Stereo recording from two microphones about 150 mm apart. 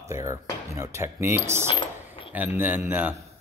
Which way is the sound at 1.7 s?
35° left (ahead or behind).